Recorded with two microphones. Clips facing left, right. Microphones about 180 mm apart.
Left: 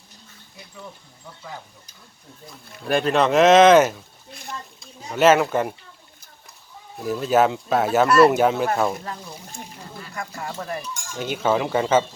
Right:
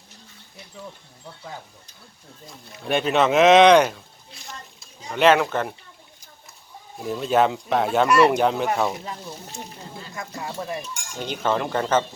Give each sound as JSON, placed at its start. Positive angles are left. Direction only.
{"t": 2.8, "sound": "speech", "side_deg": 0}
{"t": 4.3, "sound": "a sound", "side_deg": 55}
{"t": 4.8, "sound": "speech", "side_deg": 5}
{"t": 7.0, "sound": "speech", "side_deg": 0}
{"t": 8.0, "sound": "speech", "side_deg": -10}
{"t": 8.3, "sound": "speech", "side_deg": 5}
{"t": 10.0, "sound": "stir", "side_deg": -20}
{"t": 11.2, "sound": "speech", "side_deg": 5}